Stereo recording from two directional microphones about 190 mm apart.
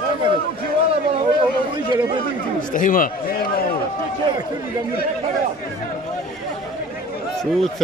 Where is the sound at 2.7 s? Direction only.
45° left (ahead or behind).